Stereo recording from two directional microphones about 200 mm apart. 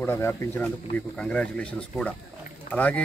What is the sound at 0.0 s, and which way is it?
Speech, 10° left (ahead or behind).